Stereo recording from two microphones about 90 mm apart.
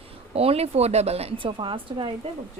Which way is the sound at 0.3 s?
90° right.